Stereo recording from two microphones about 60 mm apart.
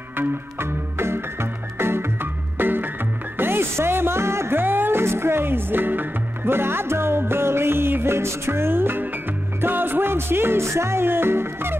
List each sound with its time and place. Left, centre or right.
0.2 s music: right